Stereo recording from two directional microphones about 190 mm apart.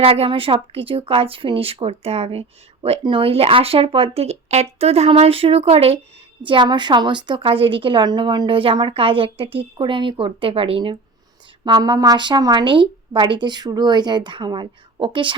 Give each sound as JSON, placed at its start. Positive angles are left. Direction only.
{"t": 0.0, "sound": "a woman's voice", "side_deg": -30}